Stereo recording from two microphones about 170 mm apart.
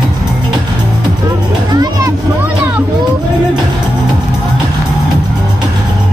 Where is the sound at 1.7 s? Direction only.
20° right (ahead or behind).